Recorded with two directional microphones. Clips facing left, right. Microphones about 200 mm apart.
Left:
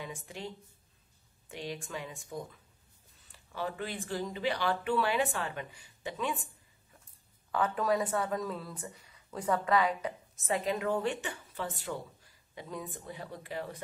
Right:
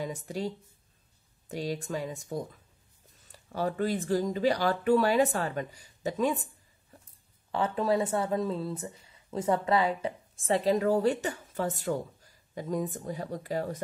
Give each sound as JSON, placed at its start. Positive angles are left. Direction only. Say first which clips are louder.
{"t": 0.0, "sound": "speech", "louder": "right 8 dB", "side_deg": -40}
{"t": 1.5, "sound": "speech", "louder": "right 7 dB", "side_deg": -40}
{"t": 7.5, "sound": "speech", "louder": "right 3 dB", "side_deg": -25}